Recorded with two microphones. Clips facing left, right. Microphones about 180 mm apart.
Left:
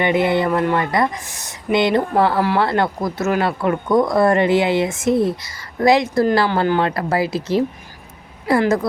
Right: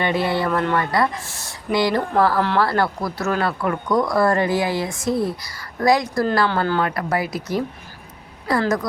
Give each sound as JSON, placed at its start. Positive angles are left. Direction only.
{"t": 0.0, "sound": "speech", "side_deg": 20}